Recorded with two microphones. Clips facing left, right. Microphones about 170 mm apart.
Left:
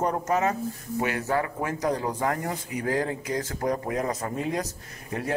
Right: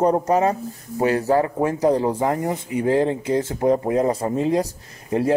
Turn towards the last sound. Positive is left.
turn(degrees=-30)  # may be behind; listen again after turning